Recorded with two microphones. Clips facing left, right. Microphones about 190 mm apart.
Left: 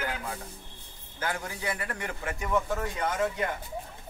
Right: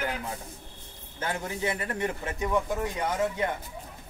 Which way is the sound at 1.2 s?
25° right (ahead or behind).